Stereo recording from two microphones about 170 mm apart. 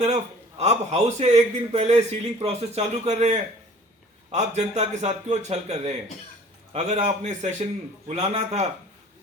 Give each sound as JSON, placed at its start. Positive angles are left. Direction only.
{"t": 0.6, "sound": "a man's voice", "side_deg": -40}